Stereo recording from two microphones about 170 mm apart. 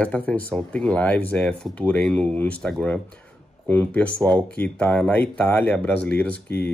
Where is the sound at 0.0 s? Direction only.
5° left (ahead or behind).